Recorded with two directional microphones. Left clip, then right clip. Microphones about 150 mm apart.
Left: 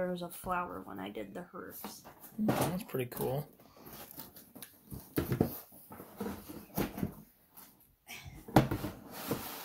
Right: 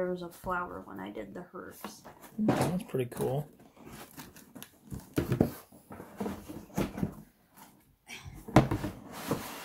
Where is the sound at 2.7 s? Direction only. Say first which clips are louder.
Right 4 dB; 25° right (ahead or behind).